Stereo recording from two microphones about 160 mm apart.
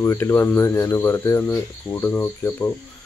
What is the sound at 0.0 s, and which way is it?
Speech, 15° left (ahead or behind).